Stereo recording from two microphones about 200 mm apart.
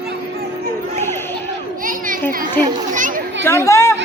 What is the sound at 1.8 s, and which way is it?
Children playing, 45° right (ahead or behind).